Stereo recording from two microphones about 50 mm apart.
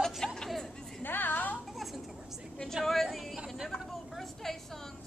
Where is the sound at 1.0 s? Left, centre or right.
Left.